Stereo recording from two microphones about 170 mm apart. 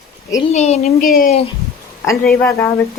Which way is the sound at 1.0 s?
60° left (ahead or behind).